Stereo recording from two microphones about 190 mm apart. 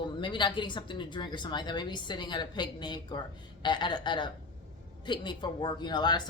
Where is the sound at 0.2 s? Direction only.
25° left (ahead or behind).